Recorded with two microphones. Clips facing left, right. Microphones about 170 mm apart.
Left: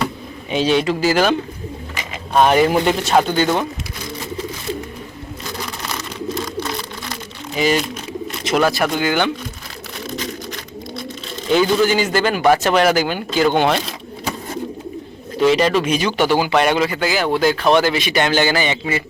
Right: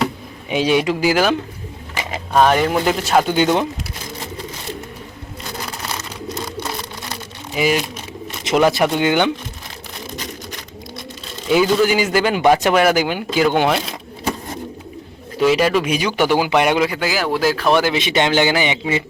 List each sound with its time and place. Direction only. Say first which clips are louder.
0.5 s a man's voice: even; 10° right (ahead or behind)
2.5 s speech: left 2 dB; 10° left (ahead or behind)
3.3 s a man's voice: right 1 dB; 15° right (ahead or behind)
7.5 s speech: even; 10° right (ahead or behind)
8.4 s a man's voice: right 2 dB; 20° right (ahead or behind)
11.4 s a man's voice: even; 10° right (ahead or behind)
15.4 s a man's voice: even; 5° right (ahead or behind)
17.9 s a man's voice: right 1 dB; 20° right (ahead or behind)